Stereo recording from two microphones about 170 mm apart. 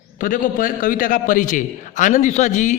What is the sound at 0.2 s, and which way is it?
A man's voice, 50° left (ahead or behind).